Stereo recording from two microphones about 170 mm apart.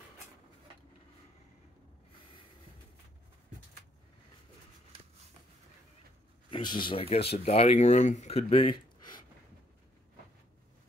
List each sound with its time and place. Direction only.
6.5 s speech: 25° left (ahead or behind)